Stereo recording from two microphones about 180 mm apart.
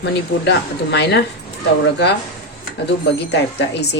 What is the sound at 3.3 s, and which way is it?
Speech, 70° left (ahead or behind).